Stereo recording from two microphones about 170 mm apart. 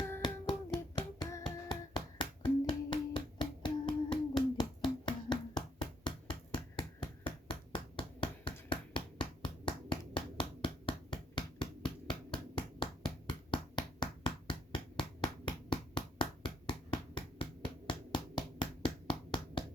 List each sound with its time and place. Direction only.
0.2 s finger snapping: 25° left (ahead or behind)
6.1 s a sound: 30° left (ahead or behind)
19.0 s finger snapping: 30° left (ahead or behind)